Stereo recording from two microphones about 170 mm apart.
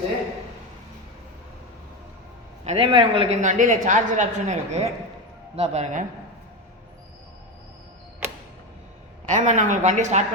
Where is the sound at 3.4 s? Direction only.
45° right (ahead or behind).